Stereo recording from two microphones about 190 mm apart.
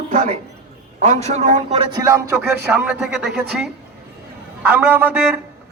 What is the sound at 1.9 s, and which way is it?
Speech, 15° right (ahead or behind).